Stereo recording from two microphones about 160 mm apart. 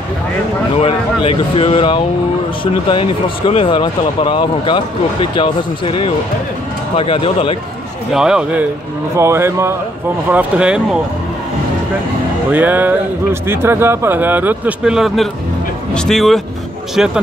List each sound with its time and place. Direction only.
0.7 s speech: 35° left (ahead or behind)
8.1 s speech: 5° right (ahead or behind)
9.1 s speech: 15° right (ahead or behind)
12.4 s speech: 10° right (ahead or behind)